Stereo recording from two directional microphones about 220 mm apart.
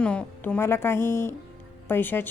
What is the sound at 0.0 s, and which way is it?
A woman's voice, 5° left (ahead or behind).